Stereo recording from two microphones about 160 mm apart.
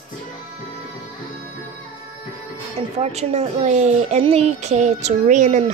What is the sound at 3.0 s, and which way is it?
A woman's voice, 40° right (ahead or behind).